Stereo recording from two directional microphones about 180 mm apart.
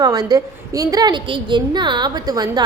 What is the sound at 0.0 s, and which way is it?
A woman's voice, 20° right (ahead or behind).